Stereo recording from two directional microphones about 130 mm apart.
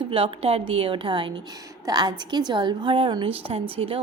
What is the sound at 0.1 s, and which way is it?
A woman's voice, 45° right (ahead or behind).